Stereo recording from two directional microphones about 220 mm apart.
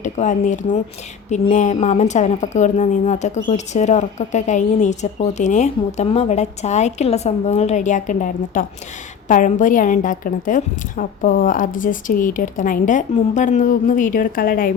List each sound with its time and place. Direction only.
0.0 s speech: 35° left (ahead or behind)